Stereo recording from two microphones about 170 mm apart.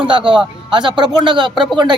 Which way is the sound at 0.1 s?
30° right (ahead or behind).